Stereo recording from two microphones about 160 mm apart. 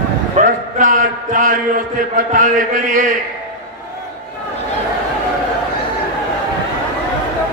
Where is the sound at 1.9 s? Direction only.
55° right (ahead or behind).